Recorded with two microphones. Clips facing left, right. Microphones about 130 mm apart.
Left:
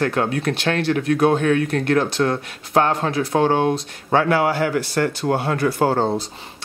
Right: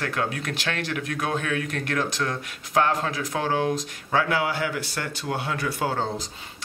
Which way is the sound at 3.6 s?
55° left (ahead or behind).